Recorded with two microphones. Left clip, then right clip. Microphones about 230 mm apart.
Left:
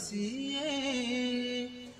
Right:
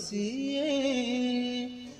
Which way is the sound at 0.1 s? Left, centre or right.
Centre.